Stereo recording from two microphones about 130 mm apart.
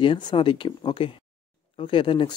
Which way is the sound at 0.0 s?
35° left (ahead or behind).